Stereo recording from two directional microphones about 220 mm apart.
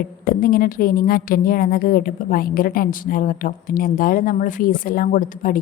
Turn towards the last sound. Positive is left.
turn(degrees=40)  # may be behind; listen again after turning